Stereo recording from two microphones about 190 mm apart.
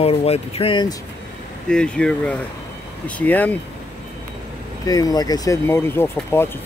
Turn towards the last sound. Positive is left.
turn(degrees=10)  # may be behind; listen again after turning